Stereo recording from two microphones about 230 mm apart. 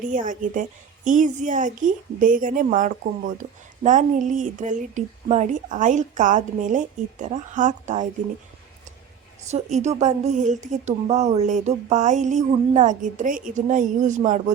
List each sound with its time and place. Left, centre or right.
0.1 s a woman's voice: right
9.5 s a woman's voice: right